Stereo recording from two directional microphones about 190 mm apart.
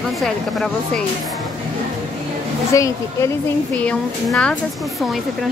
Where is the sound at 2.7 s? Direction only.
15° left (ahead or behind).